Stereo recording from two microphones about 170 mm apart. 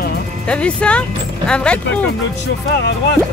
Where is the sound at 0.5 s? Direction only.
5° left (ahead or behind).